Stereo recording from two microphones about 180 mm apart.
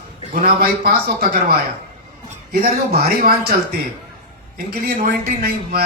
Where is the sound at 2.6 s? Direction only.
50° right (ahead or behind).